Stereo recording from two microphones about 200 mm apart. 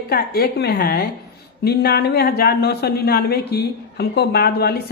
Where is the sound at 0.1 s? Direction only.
50° left (ahead or behind).